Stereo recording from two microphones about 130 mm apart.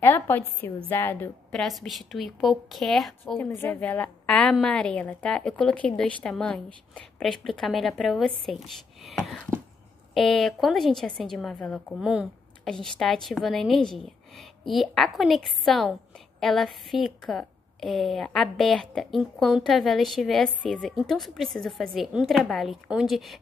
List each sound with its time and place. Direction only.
0.0 s a woman's voice: 15° left (ahead or behind)
1.5 s a woman's voice: centre (ahead or behind)
3.3 s a woman's voice: 15° left (ahead or behind); by 23.3 s centre (ahead or behind)